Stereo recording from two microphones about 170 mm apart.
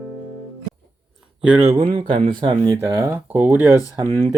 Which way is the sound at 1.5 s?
10° right (ahead or behind).